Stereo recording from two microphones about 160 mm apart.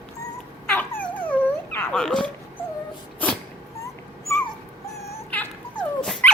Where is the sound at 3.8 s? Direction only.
15° left (ahead or behind).